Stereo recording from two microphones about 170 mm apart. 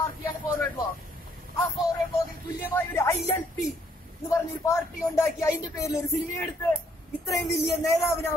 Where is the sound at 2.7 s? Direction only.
15° left (ahead or behind).